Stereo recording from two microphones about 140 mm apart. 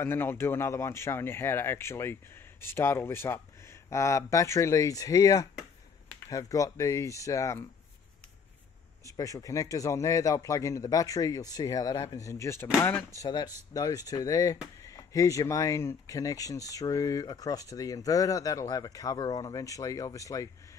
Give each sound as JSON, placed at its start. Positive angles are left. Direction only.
{"t": 0.0, "sound": "speech", "side_deg": 15}
{"t": 9.0, "sound": "speech", "side_deg": 25}